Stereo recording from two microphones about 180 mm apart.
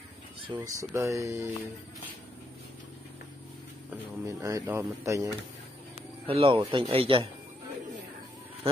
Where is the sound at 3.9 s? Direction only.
20° right (ahead or behind).